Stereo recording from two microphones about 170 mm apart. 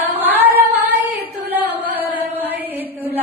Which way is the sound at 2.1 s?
10° right (ahead or behind).